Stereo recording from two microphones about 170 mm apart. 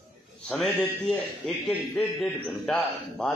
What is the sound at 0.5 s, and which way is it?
A man's voice, 5° left (ahead or behind).